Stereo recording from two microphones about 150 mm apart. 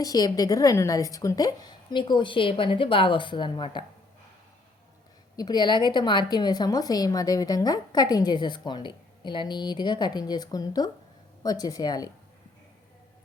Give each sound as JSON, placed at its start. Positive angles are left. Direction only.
{"t": 0.0, "sound": "a woman's voice", "side_deg": 25}
{"t": 5.4, "sound": "a woman's voice", "side_deg": 30}